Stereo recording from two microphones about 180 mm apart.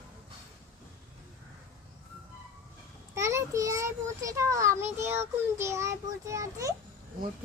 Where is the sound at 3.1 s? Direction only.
15° right (ahead or behind).